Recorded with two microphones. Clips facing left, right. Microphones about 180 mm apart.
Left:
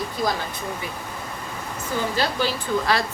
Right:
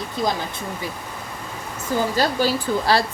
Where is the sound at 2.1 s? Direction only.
35° right (ahead or behind).